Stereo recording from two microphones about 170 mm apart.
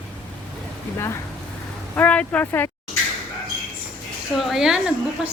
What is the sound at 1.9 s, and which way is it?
Speech, 10° left (ahead or behind).